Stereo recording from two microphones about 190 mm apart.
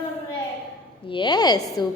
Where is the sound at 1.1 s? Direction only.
25° left (ahead or behind).